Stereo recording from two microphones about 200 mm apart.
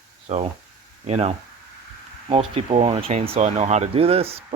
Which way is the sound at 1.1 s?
35° right (ahead or behind).